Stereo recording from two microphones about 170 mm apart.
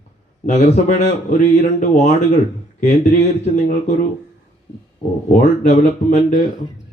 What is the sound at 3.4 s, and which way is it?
Speech, 45° left (ahead or behind).